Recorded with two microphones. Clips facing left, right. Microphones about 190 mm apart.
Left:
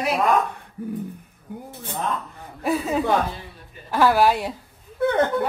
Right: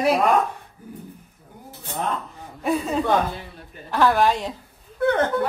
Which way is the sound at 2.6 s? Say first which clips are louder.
Even; 5° left (ahead or behind).